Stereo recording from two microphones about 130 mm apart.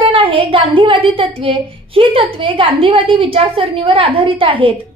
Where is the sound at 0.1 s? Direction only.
40° right (ahead or behind).